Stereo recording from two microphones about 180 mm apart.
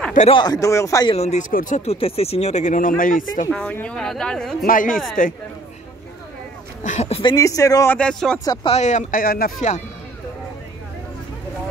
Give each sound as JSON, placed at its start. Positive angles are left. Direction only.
{"t": 0.3, "sound": "speech", "side_deg": 25}
{"t": 1.1, "sound": "speech", "side_deg": 35}
{"t": 1.5, "sound": "speech", "side_deg": 50}
{"t": 1.9, "sound": "speech", "side_deg": 35}
{"t": 3.4, "sound": "speech", "side_deg": 5}
{"t": 4.6, "sound": "speech", "side_deg": 50}
{"t": 6.8, "sound": "speech", "side_deg": 40}
{"t": 8.7, "sound": "speech", "side_deg": 40}